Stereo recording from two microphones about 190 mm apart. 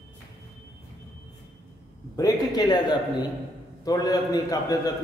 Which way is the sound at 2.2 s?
20° left (ahead or behind).